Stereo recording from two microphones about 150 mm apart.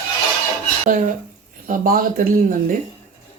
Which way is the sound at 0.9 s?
65° right (ahead or behind).